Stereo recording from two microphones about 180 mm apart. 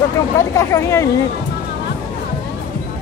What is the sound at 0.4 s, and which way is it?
Speech, 15° left (ahead or behind).